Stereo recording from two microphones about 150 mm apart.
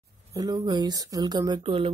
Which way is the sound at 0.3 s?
25° right (ahead or behind).